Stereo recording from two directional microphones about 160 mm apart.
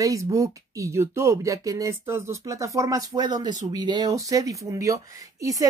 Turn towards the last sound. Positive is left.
turn(degrees=-20)  # may be behind; listen again after turning